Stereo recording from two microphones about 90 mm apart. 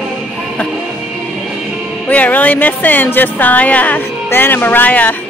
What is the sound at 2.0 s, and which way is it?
Speech, 20° left (ahead or behind).